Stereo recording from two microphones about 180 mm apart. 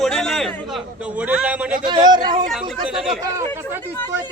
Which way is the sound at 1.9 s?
25° right (ahead or behind).